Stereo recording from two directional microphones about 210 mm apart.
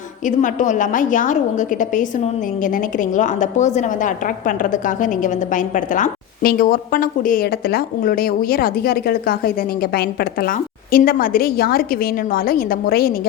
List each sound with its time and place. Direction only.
0.3 s a woman's voice: 35° left (ahead or behind)